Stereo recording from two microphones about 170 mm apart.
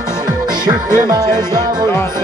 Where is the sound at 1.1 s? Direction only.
20° right (ahead or behind).